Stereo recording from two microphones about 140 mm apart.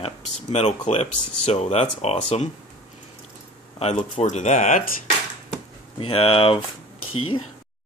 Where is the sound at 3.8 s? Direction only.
50° left (ahead or behind).